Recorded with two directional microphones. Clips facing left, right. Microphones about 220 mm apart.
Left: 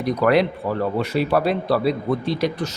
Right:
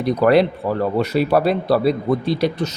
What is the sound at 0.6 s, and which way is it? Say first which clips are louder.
Speech: right 3 dB; 45° right (ahead or behind).